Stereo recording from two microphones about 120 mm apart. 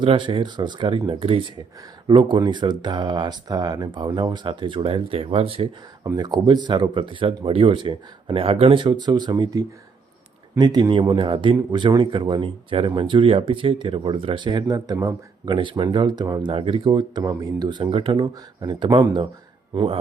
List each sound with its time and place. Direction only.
0.0 s speech: 45° right (ahead or behind)
6.1 s speech: 35° right (ahead or behind)
18.2 s speech: 40° right (ahead or behind)